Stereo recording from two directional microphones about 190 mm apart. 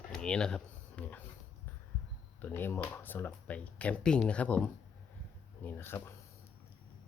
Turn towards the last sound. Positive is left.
turn(degrees=10)  # may be behind; listen again after turning